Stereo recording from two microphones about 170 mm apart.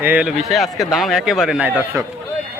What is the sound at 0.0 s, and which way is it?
A man's voice, 10° right (ahead or behind).